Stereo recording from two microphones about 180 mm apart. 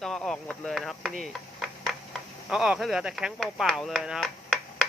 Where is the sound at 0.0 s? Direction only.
5° left (ahead or behind).